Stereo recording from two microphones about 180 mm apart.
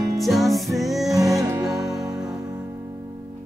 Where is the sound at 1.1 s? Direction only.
20° right (ahead or behind).